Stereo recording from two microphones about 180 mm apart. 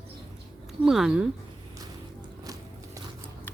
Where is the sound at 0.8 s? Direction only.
Centre (ahead or behind).